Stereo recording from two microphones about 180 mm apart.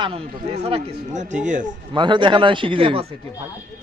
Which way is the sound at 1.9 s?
25° right (ahead or behind).